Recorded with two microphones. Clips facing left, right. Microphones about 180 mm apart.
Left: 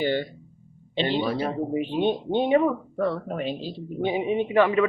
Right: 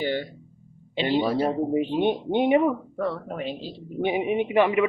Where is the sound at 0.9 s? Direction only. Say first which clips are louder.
Right 1 dB; 10° right (ahead or behind).